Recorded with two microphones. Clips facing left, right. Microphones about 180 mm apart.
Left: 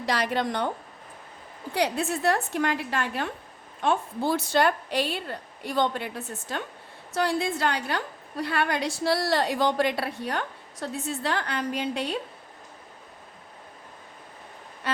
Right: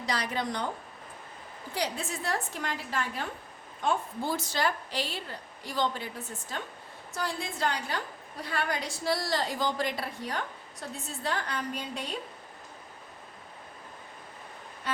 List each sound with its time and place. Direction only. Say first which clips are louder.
0.2 s a woman's voice: left 6 dB; 60° left (ahead or behind)
1.7 s a woman's voice: left 7 dB; 65° left (ahead or behind)
7.1 s a woman's voice: left 9 dB; 75° left (ahead or behind)